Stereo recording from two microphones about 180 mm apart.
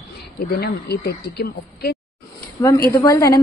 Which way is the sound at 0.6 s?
65° left (ahead or behind).